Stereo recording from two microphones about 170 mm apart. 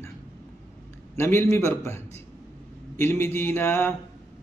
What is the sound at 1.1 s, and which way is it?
A man's voice, 15° left (ahead or behind).